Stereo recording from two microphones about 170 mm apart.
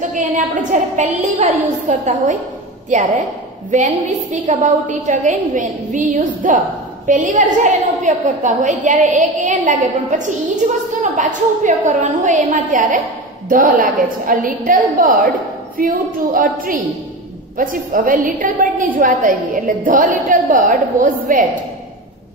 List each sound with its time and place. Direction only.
0.1 s a woman's voice: 50° right (ahead or behind)